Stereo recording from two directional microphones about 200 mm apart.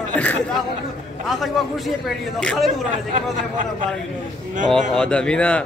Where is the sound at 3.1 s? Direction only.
40° right (ahead or behind).